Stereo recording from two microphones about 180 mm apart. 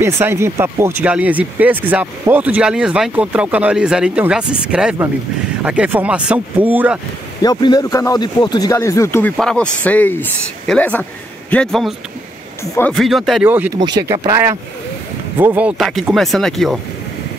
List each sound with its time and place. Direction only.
0.0 s speech: 15° right (ahead or behind)
7.4 s speech: 20° left (ahead or behind)
9.4 s speech: 5° left (ahead or behind)
12.9 s speech: centre (ahead or behind)
14.0 s speech: 20° right (ahead or behind); by 16.8 s centre (ahead or behind)